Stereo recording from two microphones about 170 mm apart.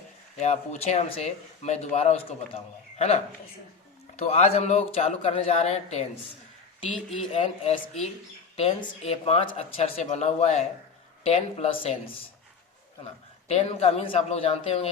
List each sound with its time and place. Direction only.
0.3 s speech: 40° left (ahead or behind)
4.2 s speech: 40° left (ahead or behind)
13.5 s speech: 40° left (ahead or behind)